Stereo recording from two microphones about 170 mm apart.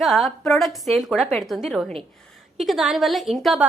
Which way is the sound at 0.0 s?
Centre (ahead or behind).